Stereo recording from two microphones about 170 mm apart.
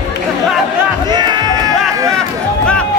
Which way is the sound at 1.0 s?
25° right (ahead or behind).